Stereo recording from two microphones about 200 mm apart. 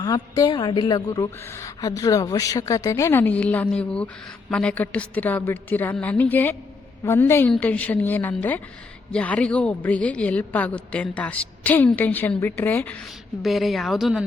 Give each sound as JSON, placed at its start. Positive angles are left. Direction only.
{"t": 0.0, "sound": "a woman's voice", "side_deg": 20}